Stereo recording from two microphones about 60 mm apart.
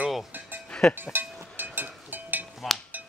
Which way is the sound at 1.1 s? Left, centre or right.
Right.